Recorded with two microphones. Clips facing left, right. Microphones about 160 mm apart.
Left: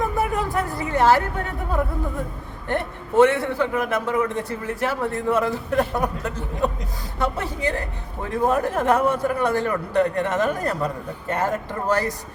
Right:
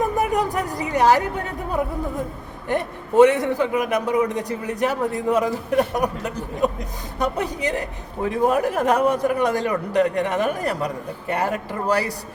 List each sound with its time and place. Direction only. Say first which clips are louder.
0.2 s speech: right 2 dB; 15° right (ahead or behind)
2.6 s a man's voice: right 2 dB; 15° right (ahead or behind)